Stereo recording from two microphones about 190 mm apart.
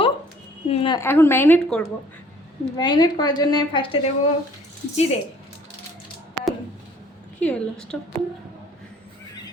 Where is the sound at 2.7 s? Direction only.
20° left (ahead or behind).